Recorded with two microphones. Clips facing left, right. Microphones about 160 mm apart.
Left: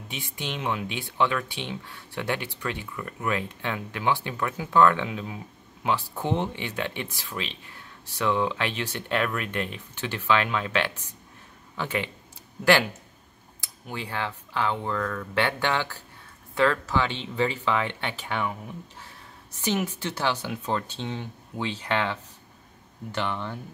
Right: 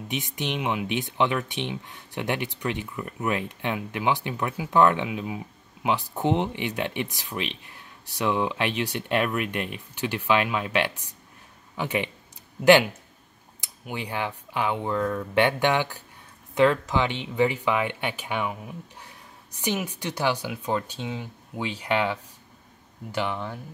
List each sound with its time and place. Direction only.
0.1 s speech: 20° right (ahead or behind)
13.6 s speech: 20° right (ahead or behind)